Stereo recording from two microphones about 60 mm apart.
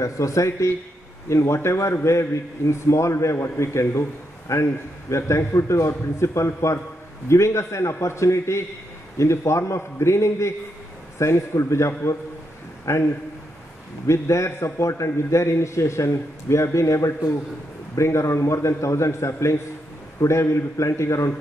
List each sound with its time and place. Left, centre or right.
0.0 s a man's voice: left
1.3 s a man's voice: left
14.0 s a man's voice: left